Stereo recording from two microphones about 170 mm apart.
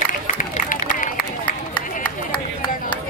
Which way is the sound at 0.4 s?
50° left (ahead or behind).